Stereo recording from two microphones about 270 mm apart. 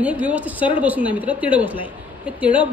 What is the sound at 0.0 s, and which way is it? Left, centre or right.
A woman's voice, centre.